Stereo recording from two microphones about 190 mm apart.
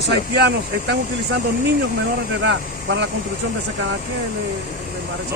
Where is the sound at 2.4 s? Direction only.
75° right (ahead or behind).